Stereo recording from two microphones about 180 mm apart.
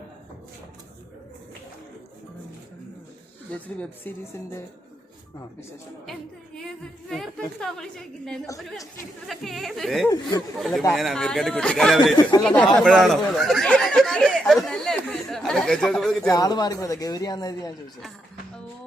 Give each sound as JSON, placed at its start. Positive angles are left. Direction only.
{"t": 3.5, "sound": "speech", "side_deg": 5}
{"t": 6.6, "sound": "speech", "side_deg": 0}
{"t": 16.3, "sound": "a woman's voice", "side_deg": 20}